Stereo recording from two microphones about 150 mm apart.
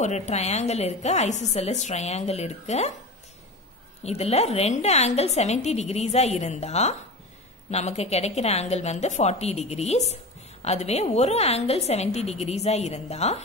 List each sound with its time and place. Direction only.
0.3 s a woman's voice: 45° left (ahead or behind)
4.0 s a woman's voice: 45° left (ahead or behind)